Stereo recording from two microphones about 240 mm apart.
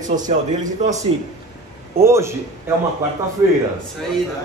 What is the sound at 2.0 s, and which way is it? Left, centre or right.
Speech, centre.